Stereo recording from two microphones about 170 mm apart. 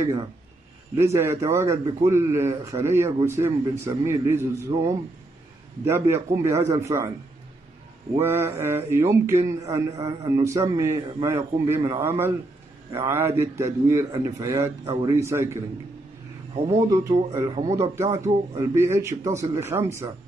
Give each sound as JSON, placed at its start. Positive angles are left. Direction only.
{"t": 0.0, "sound": "a man's voice", "side_deg": -25}
{"t": 5.9, "sound": "a man's voice", "side_deg": -15}
{"t": 8.2, "sound": "a man's voice", "side_deg": -15}
{"t": 16.5, "sound": "speech", "side_deg": -35}
{"t": 17.3, "sound": "speech", "side_deg": -20}
{"t": 18.2, "sound": "speech", "side_deg": -35}
{"t": 18.6, "sound": "a man's voice", "side_deg": -20}